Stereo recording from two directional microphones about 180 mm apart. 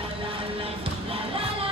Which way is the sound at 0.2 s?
30° right (ahead or behind).